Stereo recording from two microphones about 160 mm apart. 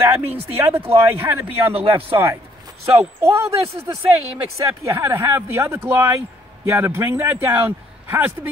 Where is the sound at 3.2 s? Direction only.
15° right (ahead or behind).